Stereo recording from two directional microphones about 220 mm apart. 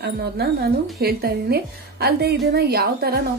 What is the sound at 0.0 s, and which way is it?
A woman's voice, 45° right (ahead or behind).